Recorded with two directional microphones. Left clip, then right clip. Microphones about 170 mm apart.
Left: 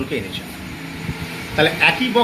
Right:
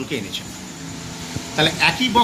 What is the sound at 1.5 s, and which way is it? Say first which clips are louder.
Speech: left 2 dB; 70° right (ahead or behind).